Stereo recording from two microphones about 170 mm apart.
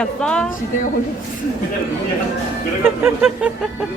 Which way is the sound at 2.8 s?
10° right (ahead or behind).